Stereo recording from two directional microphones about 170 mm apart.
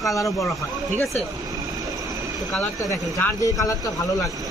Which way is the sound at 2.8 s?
20° left (ahead or behind).